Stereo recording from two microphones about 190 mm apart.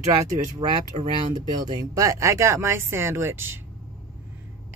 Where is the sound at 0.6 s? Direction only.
35° right (ahead or behind).